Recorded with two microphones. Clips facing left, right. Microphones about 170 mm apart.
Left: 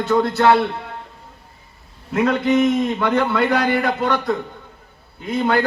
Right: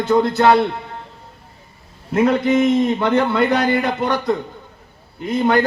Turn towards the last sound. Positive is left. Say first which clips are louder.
# right 2 dB
turn(degrees=-20)  # may be behind; listen again after turning